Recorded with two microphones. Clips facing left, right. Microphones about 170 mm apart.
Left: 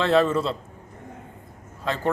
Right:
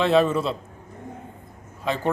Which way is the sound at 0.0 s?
15° right (ahead or behind).